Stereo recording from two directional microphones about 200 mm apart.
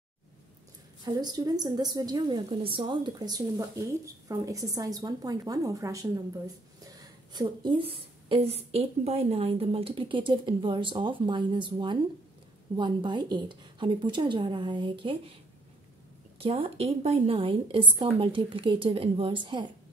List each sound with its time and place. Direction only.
1.0 s a woman's voice: 20° right (ahead or behind)
16.3 s a woman's voice: 25° right (ahead or behind)